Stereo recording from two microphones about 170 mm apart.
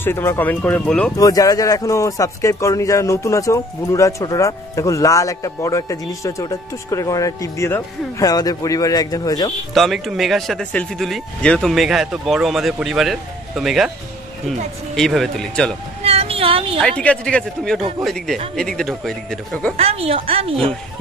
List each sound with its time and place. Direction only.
0.0 s speech: 15° left (ahead or behind)
1.1 s speech: 20° left (ahead or behind)
9.8 s speech: centre (ahead or behind)
15.0 s speech: centre (ahead or behind)
16.0 s a sound: 35° right (ahead or behind)
16.8 s speech: 5° left (ahead or behind)
19.8 s speech: 35° right (ahead or behind)